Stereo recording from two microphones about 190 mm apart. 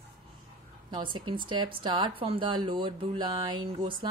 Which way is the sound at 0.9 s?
25° right (ahead or behind).